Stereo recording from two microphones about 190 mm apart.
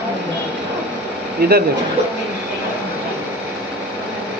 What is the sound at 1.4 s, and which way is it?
Speech, 55° right (ahead or behind).